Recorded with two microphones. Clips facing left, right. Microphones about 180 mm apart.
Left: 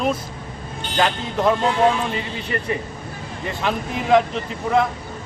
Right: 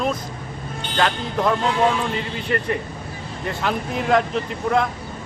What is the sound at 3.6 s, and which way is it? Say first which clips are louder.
Speech: even; centre (ahead or behind).